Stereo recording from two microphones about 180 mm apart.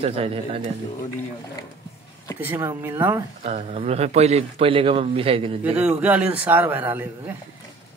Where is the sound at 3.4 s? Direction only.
35° right (ahead or behind).